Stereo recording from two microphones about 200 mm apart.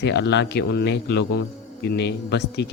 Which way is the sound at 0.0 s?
60° left (ahead or behind).